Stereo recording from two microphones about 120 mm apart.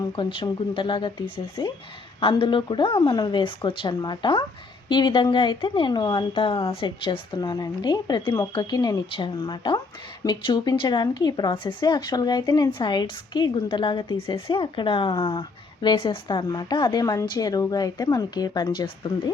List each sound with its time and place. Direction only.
0.0 s speech: 40° left (ahead or behind)